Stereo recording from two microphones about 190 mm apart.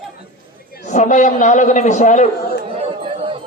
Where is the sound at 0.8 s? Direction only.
40° left (ahead or behind).